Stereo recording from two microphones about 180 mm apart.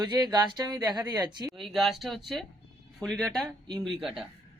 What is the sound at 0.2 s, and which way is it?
Speech, 25° right (ahead or behind).